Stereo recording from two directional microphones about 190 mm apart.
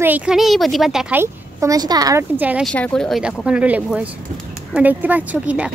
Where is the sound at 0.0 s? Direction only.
5° right (ahead or behind).